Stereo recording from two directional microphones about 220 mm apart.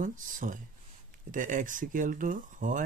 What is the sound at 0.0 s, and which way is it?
Speech, 35° right (ahead or behind).